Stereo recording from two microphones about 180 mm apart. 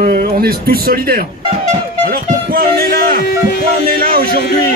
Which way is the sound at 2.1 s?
55° right (ahead or behind).